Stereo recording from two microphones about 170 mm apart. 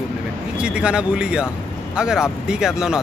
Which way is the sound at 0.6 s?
5° right (ahead or behind).